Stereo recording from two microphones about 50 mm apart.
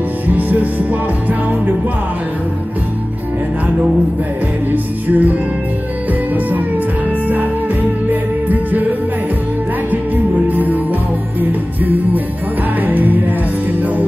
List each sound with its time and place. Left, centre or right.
0.3 s music: right
5.1 s music: right
8.1 s music: right
10.5 s music: right
11.8 s music: right